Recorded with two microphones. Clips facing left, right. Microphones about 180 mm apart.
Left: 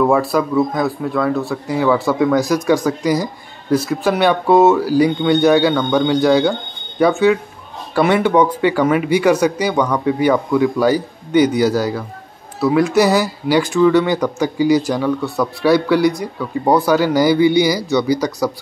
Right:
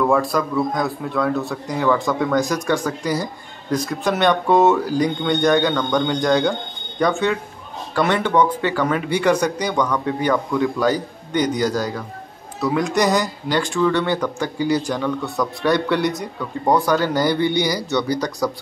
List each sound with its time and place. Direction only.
0.0 s speech: 5° left (ahead or behind)